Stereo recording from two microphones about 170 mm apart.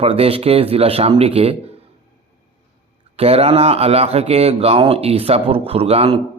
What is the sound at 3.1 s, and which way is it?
Speech, 35° right (ahead or behind).